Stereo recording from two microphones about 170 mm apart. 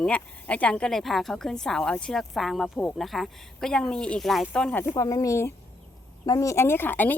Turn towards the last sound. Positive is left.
turn(degrees=10)  # may be behind; listen again after turning